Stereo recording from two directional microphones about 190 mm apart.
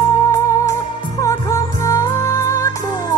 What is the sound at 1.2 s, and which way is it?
Music, 15° left (ahead or behind).